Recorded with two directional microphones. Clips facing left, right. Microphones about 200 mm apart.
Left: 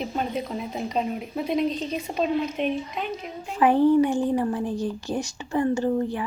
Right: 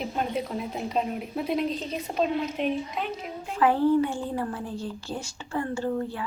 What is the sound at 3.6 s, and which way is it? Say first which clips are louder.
Speech: left 4 dB; 15° left (ahead or behind).